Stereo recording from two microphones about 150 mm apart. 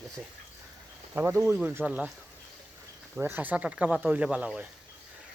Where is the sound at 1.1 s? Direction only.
15° right (ahead or behind).